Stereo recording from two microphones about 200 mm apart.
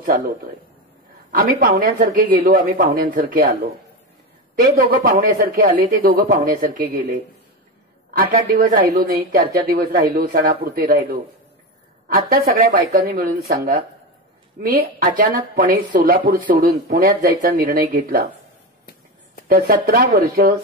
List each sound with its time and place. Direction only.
1.3 s speech: 45° right (ahead or behind)
19.4 s speech: 45° right (ahead or behind)